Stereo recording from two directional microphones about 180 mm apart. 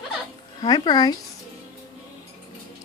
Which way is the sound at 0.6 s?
25° left (ahead or behind).